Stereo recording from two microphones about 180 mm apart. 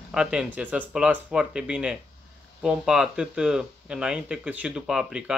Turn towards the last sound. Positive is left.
turn(degrees=-5)  # may be behind; listen again after turning